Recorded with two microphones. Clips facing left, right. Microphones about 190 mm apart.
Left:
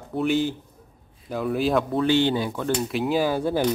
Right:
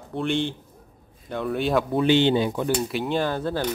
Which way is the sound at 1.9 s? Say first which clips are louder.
Right 5 dB; 20° right (ahead or behind).